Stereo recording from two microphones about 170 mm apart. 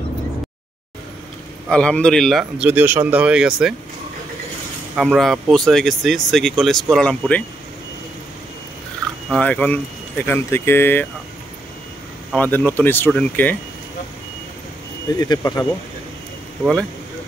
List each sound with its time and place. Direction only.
1.7 s speech: 5° left (ahead or behind)
2.7 s speech: 15° right (ahead or behind)
4.9 s speech: centre (ahead or behind)
9.3 s speech: 5° left (ahead or behind)
12.4 s speech: 10° left (ahead or behind)
15.1 s speech: 20° left (ahead or behind)